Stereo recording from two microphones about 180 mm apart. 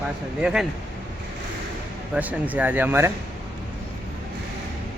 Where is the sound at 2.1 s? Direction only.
10° right (ahead or behind).